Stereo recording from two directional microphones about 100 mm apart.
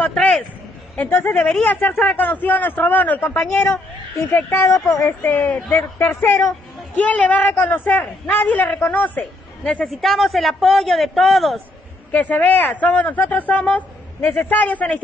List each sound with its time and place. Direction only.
0.0 s a sound: 5° left (ahead or behind)
0.9 s speech: 20° left (ahead or behind)
1.3 s speech: 10° left (ahead or behind)
4.5 s speech: 25° left (ahead or behind)
5.3 s speech: 10° left (ahead or behind)
5.9 s speech: 20° left (ahead or behind)
10.0 s a man's voice: centre (ahead or behind)
12.1 s speech: 15° left (ahead or behind)